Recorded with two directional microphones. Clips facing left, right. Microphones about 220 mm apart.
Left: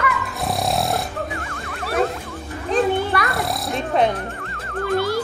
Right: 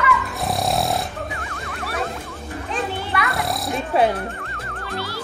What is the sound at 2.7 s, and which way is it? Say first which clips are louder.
Children playing: left 8 dB; 35° left (ahead or behind).